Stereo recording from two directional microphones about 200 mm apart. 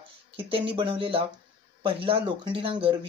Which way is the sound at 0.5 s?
25° right (ahead or behind).